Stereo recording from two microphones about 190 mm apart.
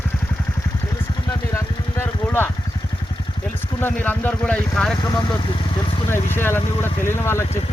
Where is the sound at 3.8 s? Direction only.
10° left (ahead or behind).